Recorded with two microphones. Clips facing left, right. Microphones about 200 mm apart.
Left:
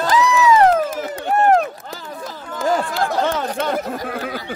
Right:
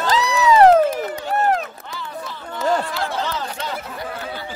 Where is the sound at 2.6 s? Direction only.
50° left (ahead or behind).